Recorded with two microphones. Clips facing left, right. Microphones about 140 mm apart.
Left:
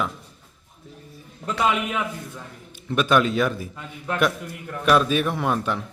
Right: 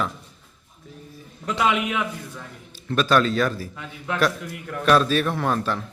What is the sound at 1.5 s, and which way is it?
Speech, centre (ahead or behind).